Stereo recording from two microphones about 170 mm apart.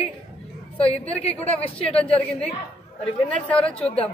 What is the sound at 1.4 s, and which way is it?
Speech, 35° left (ahead or behind).